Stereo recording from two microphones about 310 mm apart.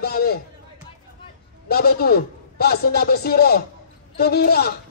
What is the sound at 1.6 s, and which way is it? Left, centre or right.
A man's voice, left.